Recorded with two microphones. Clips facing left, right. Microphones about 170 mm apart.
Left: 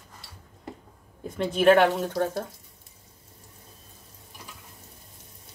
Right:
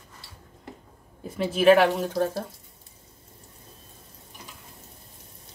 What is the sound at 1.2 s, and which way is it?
Speech, 5° right (ahead or behind).